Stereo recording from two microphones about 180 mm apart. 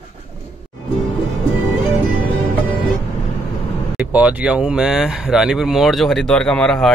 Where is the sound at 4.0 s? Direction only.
10° right (ahead or behind).